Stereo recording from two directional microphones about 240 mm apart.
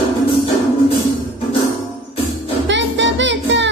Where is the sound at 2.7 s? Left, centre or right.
Right.